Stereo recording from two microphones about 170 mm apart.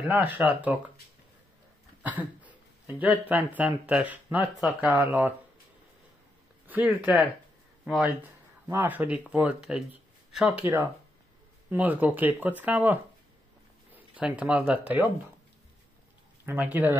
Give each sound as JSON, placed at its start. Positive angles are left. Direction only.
{"t": 0.1, "sound": "speech", "side_deg": -10}
{"t": 2.0, "sound": "speech", "side_deg": -10}
{"t": 7.0, "sound": "speech", "side_deg": -5}
{"t": 10.6, "sound": "speech", "side_deg": -15}
{"t": 13.9, "sound": "a sound", "side_deg": -5}
{"t": 14.7, "sound": "speech", "side_deg": -10}
{"t": 16.4, "sound": "speech", "side_deg": -10}